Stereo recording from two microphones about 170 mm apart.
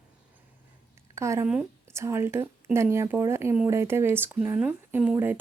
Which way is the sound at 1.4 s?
5° right (ahead or behind).